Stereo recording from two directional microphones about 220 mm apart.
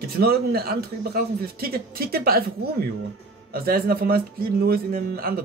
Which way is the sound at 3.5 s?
40° right (ahead or behind).